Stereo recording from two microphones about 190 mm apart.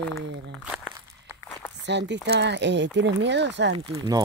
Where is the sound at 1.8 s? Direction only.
65° right (ahead or behind).